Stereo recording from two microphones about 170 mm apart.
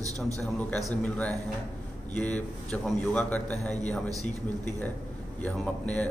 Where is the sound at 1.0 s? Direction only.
10° left (ahead or behind).